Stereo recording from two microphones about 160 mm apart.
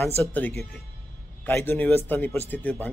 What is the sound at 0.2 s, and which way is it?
A man's voice, 10° left (ahead or behind).